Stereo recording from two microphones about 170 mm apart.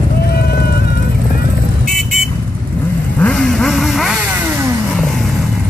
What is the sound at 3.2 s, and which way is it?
Vehicle, 5° left (ahead or behind).